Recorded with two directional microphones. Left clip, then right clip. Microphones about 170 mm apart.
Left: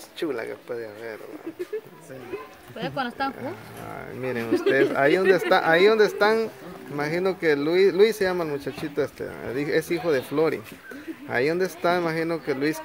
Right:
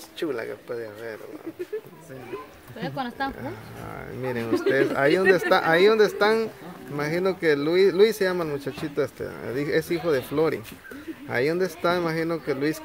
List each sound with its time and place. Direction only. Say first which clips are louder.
0.2 s speech: even; centre (ahead or behind)
2.8 s speech: left 2 dB; 25° left (ahead or behind)
3.4 s speech: left 1 dB; centre (ahead or behind)